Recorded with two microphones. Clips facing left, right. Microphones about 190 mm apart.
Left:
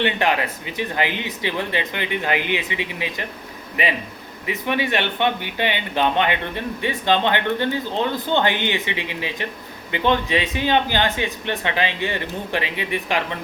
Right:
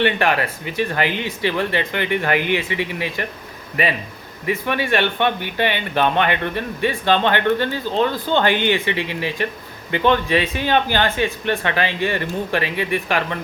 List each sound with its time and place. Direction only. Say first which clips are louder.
0.0 s speech: right 2 dB; 20° left (ahead or behind)
4.4 s speech: right 2 dB; 15° left (ahead or behind)